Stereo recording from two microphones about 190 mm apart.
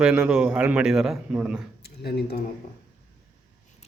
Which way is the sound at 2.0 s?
60° left (ahead or behind).